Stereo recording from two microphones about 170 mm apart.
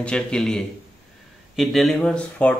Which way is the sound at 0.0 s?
5° left (ahead or behind).